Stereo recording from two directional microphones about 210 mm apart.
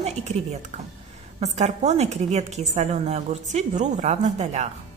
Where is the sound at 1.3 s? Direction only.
30° right (ahead or behind).